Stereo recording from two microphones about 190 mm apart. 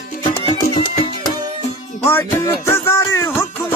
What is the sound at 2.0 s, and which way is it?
Music, 10° left (ahead or behind).